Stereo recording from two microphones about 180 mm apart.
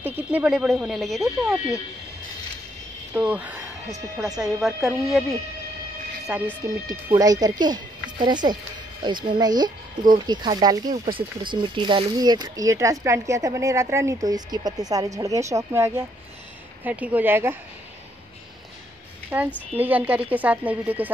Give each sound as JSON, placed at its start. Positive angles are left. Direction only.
{"t": 0.0, "sound": "speech", "side_deg": -10}
{"t": 3.2, "sound": "speech", "side_deg": -10}
{"t": 6.2, "sound": "speech", "side_deg": -10}
{"t": 7.2, "sound": "speech", "side_deg": -20}
{"t": 19.3, "sound": "speech", "side_deg": -10}